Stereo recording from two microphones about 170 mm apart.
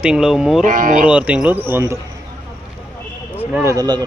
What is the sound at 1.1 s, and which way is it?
Speech, 5° right (ahead or behind).